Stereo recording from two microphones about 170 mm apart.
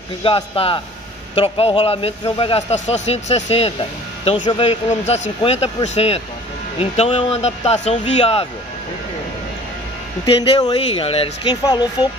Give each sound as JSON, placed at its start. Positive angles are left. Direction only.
{"t": 0.2, "sound": "a man's voice", "side_deg": 35}
{"t": 10.2, "sound": "a man's voice", "side_deg": 30}